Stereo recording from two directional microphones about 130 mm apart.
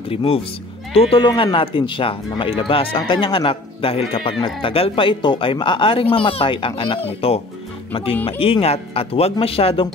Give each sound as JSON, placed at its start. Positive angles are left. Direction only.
{"t": 0.1, "sound": "speech", "side_deg": 45}